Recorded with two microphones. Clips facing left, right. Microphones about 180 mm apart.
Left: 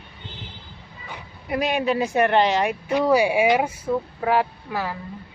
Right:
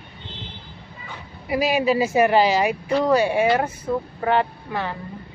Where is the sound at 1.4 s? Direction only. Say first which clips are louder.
Right 2 dB; 5° right (ahead or behind).